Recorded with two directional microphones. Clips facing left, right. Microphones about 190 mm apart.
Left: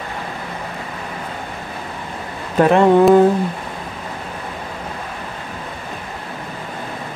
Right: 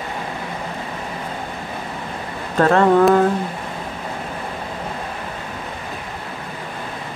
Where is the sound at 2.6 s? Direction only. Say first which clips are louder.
Left 2 dB; 15° left (ahead or behind).